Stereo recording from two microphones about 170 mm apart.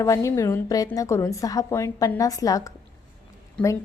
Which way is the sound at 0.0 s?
20° left (ahead or behind).